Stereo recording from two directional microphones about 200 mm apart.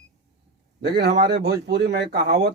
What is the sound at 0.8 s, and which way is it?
Speech, 55° right (ahead or behind).